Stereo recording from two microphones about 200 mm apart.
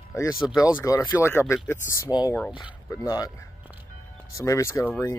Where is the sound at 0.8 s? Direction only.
15° left (ahead or behind).